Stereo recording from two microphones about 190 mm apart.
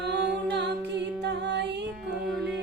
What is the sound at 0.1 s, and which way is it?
A capella, 60° right (ahead or behind).